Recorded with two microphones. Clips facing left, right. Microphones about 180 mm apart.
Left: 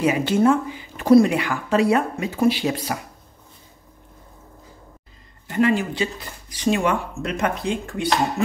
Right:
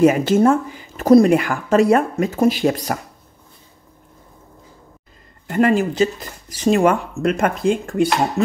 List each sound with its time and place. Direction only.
0.0 s speech: 45° right (ahead or behind)
5.5 s speech: 45° right (ahead or behind)